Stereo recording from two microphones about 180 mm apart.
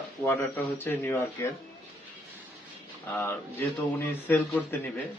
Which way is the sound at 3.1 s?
10° left (ahead or behind).